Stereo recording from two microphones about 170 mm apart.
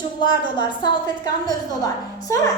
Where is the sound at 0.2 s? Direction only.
25° left (ahead or behind).